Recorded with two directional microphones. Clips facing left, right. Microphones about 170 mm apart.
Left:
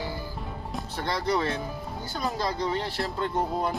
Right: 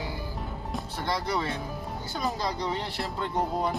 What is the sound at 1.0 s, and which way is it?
Speech, 10° right (ahead or behind).